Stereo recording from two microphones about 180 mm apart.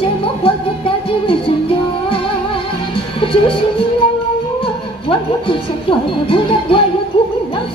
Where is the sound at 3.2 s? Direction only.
30° left (ahead or behind).